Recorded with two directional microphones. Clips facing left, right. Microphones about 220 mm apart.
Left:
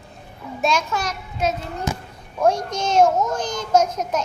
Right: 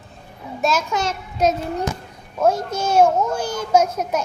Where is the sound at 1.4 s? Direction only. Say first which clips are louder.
Right 4 dB; 40° right (ahead or behind).